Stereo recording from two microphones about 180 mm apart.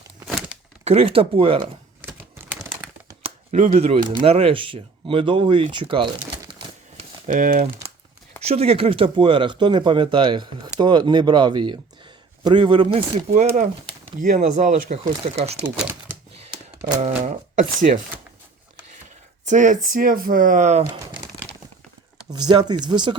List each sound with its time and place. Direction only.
0.3 s crumpling: 5° right (ahead or behind)
0.9 s speech: 35° right (ahead or behind)
2.1 s typing: 10° right (ahead or behind)
3.2 s speech: 45° right (ahead or behind); by 6.1 s 30° right (ahead or behind)
6.4 s crumpling: 30° right (ahead or behind)
7.3 s speech: 50° right (ahead or behind)
8.4 s speech: 35° right (ahead or behind)
15.8 s crumpling: 10° right (ahead or behind)
17.0 s speech: 40° right (ahead or behind)
19.5 s speech: 45° right (ahead or behind)
20.8 s speech: 20° right (ahead or behind)
22.3 s speech: 25° right (ahead or behind)